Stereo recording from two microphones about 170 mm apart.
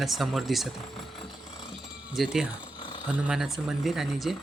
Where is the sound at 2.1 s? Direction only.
5° right (ahead or behind).